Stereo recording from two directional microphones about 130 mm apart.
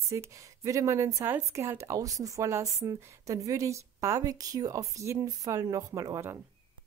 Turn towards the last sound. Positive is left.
turn(degrees=-20)  # may be behind; listen again after turning